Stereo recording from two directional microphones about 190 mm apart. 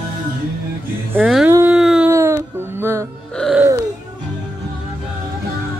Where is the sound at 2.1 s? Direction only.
15° right (ahead or behind).